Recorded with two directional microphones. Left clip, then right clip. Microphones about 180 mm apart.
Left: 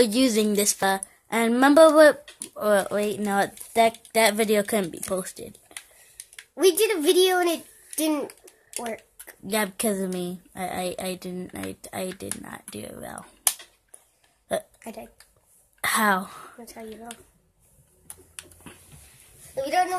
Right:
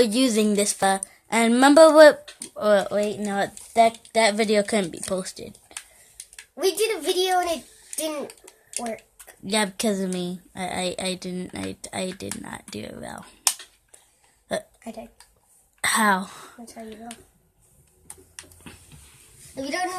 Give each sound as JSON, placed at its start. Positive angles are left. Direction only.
{"t": 0.0, "sound": "speech", "side_deg": 0}
{"t": 6.5, "sound": "speech", "side_deg": 50}
{"t": 9.5, "sound": "speech", "side_deg": -5}
{"t": 14.8, "sound": "speech", "side_deg": 55}
{"t": 15.8, "sound": "speech", "side_deg": 0}
{"t": 16.6, "sound": "speech", "side_deg": 50}
{"t": 19.5, "sound": "a woman's voice", "side_deg": 25}